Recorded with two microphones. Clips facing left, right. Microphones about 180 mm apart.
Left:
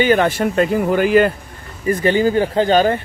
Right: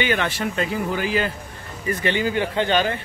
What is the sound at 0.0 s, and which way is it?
Speech, 40° left (ahead or behind).